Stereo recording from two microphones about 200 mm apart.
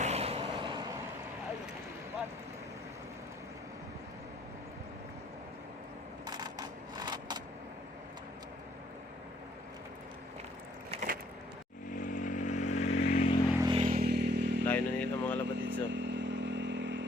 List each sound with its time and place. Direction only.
0.0 s vehicle: 30° right (ahead or behind)
6.2 s a sound: 20° right (ahead or behind)
10.9 s vehicle: 30° right (ahead or behind)
11.9 s vehicle: 40° left (ahead or behind)
13.6 s vehicle: 20° right (ahead or behind)
13.8 s motorcycle: 50° right (ahead or behind)
14.7 s a sound: 10° left (ahead or behind)
15.9 s motorcycle: 65° right (ahead or behind)